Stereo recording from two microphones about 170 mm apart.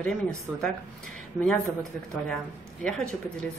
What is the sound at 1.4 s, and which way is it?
Speech, 5° left (ahead or behind).